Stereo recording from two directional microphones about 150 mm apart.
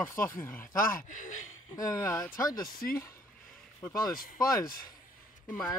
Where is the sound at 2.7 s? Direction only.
70° left (ahead or behind).